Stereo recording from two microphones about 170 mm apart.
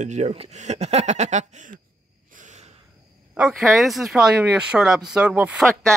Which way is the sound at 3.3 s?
5° right (ahead or behind).